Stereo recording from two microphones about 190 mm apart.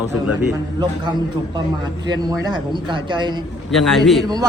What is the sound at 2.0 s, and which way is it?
A man's voice, 20° right (ahead or behind).